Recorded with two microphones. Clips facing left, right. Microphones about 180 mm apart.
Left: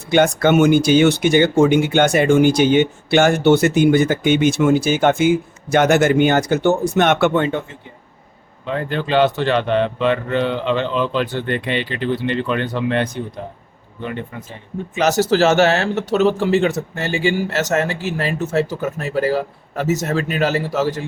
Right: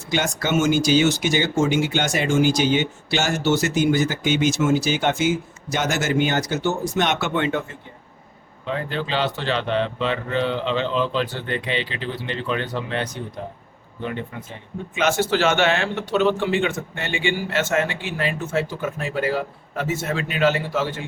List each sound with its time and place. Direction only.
0.1 s speech: 60° left (ahead or behind)
8.9 s speech: 55° left (ahead or behind)
14.9 s a man's voice: 40° left (ahead or behind)